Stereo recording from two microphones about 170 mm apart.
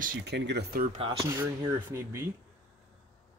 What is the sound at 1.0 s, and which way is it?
Speech, 30° right (ahead or behind).